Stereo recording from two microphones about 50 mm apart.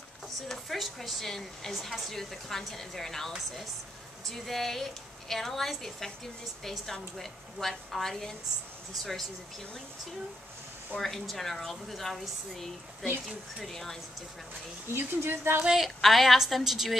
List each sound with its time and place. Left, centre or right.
0.5 s a woman's voice: centre
1.7 s a woman's voice: centre
11.0 s a woman's voice: centre
13.7 s speech: centre
14.9 s speech: right
15.8 s a woman's voice: centre